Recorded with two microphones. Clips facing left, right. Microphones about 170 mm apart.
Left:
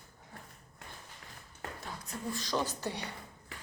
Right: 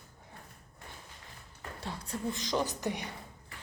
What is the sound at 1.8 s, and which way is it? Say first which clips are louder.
Beatboxing: right 5 dB; 30° right (ahead or behind).